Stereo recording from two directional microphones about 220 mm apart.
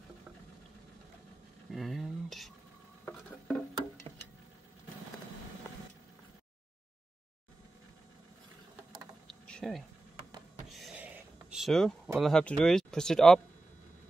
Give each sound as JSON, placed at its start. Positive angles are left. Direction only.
{"t": 1.7, "sound": "speech", "side_deg": 0}
{"t": 3.1, "sound": "music", "side_deg": 5}
{"t": 9.3, "sound": "a sound", "side_deg": 5}
{"t": 11.5, "sound": "speech", "side_deg": 0}